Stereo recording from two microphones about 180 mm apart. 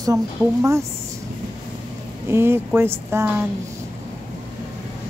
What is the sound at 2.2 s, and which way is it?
Speech, 15° right (ahead or behind).